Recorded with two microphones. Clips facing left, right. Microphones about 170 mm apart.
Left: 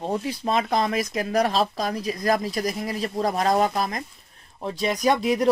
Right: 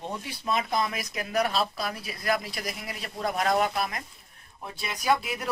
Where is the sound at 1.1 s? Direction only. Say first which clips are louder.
Left 4 dB; 40° left (ahead or behind).